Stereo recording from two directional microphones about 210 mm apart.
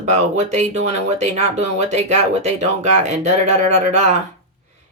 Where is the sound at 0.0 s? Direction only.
35° right (ahead or behind).